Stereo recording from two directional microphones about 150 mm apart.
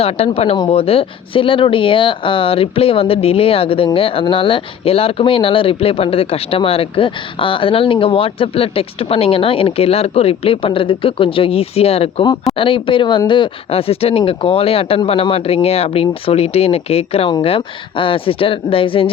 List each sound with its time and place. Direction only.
0.0 s speech: 40° left (ahead or behind)